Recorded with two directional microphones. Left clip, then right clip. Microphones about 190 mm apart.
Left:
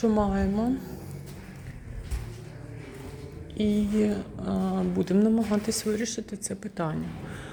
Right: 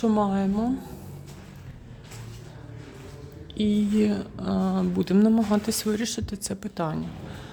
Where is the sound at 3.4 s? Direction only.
35° right (ahead or behind).